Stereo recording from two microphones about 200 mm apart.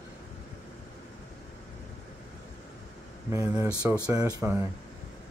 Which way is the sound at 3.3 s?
10° right (ahead or behind).